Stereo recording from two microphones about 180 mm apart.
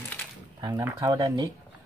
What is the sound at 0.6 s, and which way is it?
Speech, 20° right (ahead or behind).